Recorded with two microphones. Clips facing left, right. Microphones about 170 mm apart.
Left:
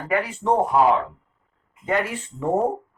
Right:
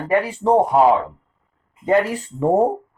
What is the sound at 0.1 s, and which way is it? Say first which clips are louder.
Speech: right 5 dB; 35° right (ahead or behind).